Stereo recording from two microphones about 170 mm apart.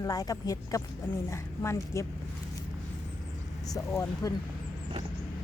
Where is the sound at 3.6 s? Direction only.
20° left (ahead or behind).